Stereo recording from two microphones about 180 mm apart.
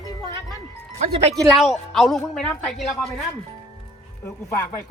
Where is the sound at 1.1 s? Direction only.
35° right (ahead or behind).